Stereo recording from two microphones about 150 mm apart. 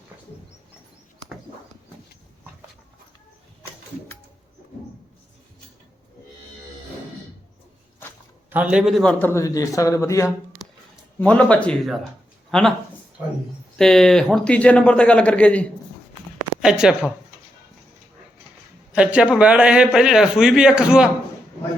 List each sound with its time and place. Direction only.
8.4 s a man's voice: 10° right (ahead or behind)
9.1 s a man's voice: 15° left (ahead or behind)
11.2 s speech: 10° left (ahead or behind)
13.7 s speech: 5° left (ahead or behind)
16.6 s a man's voice: 5° right (ahead or behind)
18.9 s a man's voice: 5° right (ahead or behind)